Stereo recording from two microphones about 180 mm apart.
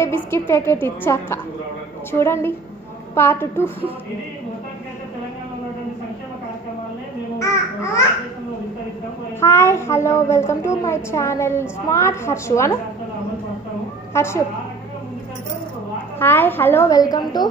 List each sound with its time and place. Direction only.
0.0 s a child's voice: 15° left (ahead or behind)
9.4 s a child's voice: 15° left (ahead or behind)
14.1 s a child's voice: 15° left (ahead or behind)
16.2 s a child's voice: 10° left (ahead or behind)